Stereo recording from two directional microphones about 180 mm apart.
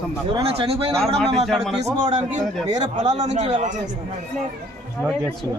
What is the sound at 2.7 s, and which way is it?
Speech, 40° right (ahead or behind).